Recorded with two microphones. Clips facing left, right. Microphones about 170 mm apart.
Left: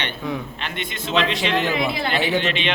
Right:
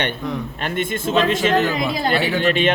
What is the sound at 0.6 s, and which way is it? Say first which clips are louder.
A man's voice: right 7 dB; 45° right (ahead or behind).